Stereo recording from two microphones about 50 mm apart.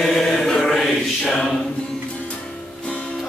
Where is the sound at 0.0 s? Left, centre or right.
Centre.